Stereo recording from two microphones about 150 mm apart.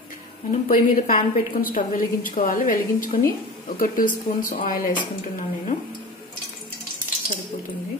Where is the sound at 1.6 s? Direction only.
65° left (ahead or behind).